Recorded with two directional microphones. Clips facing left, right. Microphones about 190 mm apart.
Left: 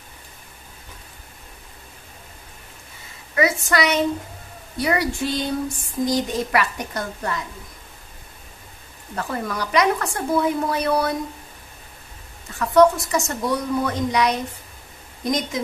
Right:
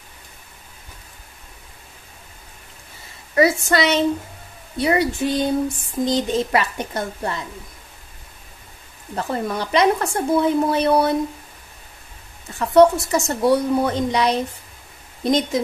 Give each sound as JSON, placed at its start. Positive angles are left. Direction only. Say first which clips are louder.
{"t": 3.3, "sound": "a woman's voice", "louder": "right 3 dB", "side_deg": -30}
{"t": 9.1, "sound": "a woman's voice", "louder": "right 3 dB", "side_deg": -25}
{"t": 12.5, "sound": "a woman's voice", "louder": "right 2 dB", "side_deg": -30}